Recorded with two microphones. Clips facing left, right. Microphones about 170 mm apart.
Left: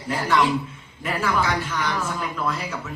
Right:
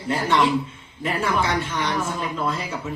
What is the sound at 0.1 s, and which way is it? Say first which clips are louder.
Speech: right 1 dB; 25° right (ahead or behind).